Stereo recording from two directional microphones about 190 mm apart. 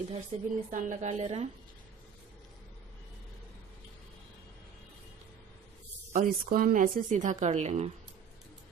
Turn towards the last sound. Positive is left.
turn(degrees=-35)  # may be behind; listen again after turning